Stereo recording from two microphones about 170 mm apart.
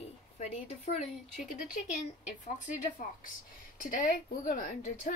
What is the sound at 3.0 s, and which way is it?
A woman's voice, 55° left (ahead or behind).